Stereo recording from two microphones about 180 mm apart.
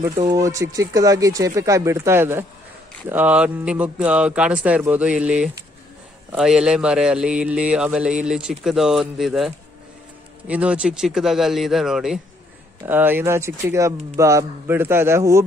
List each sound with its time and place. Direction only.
0.3 s speech: 20° right (ahead or behind)